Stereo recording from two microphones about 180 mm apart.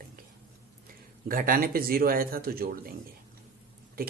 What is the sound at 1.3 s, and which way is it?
Speech, 55° right (ahead or behind).